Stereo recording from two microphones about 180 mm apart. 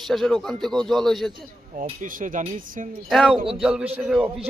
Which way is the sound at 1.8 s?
50° right (ahead or behind).